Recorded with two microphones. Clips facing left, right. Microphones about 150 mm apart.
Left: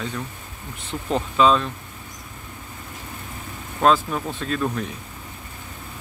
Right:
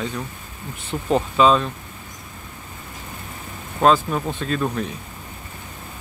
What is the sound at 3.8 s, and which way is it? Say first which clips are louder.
Speech: right 2 dB; centre (ahead or behind).